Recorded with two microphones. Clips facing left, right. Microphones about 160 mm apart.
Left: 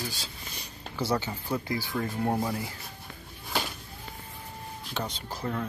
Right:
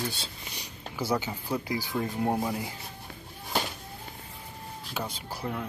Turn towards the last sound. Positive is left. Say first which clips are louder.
# left 1 dB
turn(degrees=-10)  # may be behind; listen again after turning